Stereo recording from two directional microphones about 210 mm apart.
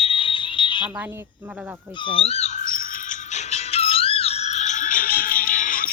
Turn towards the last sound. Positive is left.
turn(degrees=40)  # may be behind; listen again after turning